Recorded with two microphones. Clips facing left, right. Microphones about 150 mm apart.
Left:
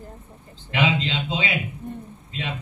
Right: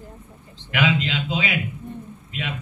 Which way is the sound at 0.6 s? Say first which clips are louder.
Right 1 dB; 25° left (ahead or behind).